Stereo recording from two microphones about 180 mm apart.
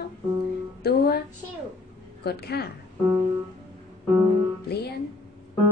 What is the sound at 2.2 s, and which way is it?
Speech, 65° left (ahead or behind).